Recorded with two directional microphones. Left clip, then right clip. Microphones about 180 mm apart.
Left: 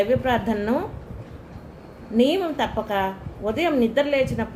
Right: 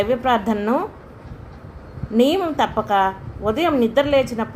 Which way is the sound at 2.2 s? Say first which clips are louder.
Right 3 dB; 35° right (ahead or behind).